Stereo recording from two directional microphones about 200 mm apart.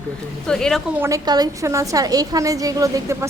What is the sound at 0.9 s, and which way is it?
A woman's voice, 15° right (ahead or behind).